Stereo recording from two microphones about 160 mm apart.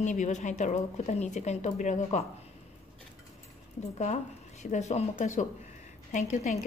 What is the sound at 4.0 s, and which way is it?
A woman's voice, 45° left (ahead or behind).